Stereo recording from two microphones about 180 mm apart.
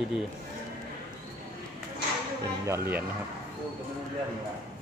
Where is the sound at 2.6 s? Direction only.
15° right (ahead or behind).